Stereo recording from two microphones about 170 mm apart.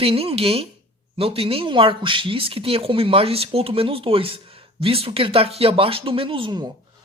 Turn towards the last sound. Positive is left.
turn(degrees=-25)  # may be behind; listen again after turning